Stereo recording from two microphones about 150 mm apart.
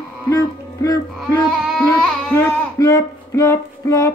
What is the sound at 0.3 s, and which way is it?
Music, 25° left (ahead or behind).